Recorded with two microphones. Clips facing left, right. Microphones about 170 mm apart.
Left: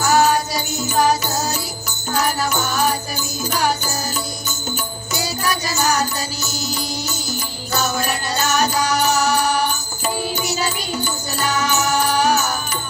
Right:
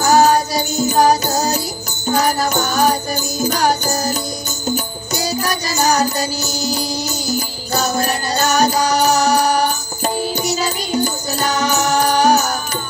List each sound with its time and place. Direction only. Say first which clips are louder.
0.0 s music: right 4 dB; 40° right (ahead or behind)